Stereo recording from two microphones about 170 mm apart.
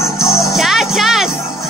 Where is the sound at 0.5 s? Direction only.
Centre (ahead or behind).